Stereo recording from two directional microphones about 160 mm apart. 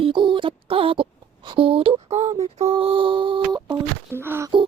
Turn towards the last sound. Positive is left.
turn(degrees=-15)  # may be behind; listen again after turning